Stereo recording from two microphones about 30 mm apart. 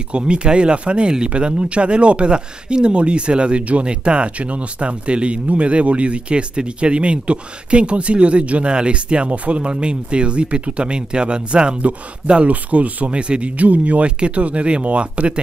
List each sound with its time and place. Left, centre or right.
0.2 s speech: right
12.4 s speech: right
13.1 s speech: right
13.6 s speech: right
14.0 s speech: right